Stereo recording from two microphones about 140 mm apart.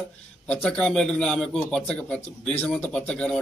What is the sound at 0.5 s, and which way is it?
A man's voice, 5° left (ahead or behind).